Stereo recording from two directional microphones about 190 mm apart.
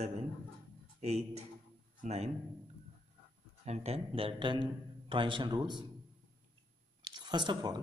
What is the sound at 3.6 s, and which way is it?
A man's voice, 35° right (ahead or behind).